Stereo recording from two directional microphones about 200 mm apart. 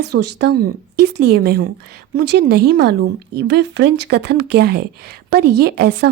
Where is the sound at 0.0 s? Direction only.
60° right (ahead or behind).